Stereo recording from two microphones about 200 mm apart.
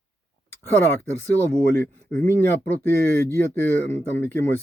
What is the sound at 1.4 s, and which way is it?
Speech, 10° left (ahead or behind).